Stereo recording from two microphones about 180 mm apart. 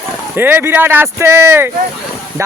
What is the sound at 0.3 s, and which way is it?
Speech, 10° right (ahead or behind).